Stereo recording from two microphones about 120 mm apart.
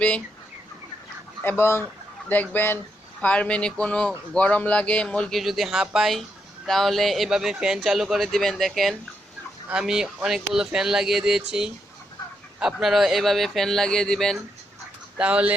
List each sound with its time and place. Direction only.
1.4 s speech: 20° left (ahead or behind)
15.2 s speech: 10° right (ahead or behind)